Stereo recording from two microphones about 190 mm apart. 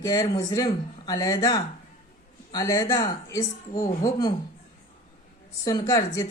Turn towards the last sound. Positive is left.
turn(degrees=20)  # may be behind; listen again after turning